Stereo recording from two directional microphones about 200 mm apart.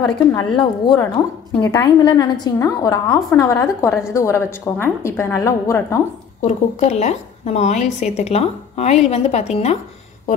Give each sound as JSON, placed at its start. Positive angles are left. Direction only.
{"t": 0.0, "sound": "a woman's voice", "side_deg": 20}
{"t": 6.4, "sound": "a woman's voice", "side_deg": 35}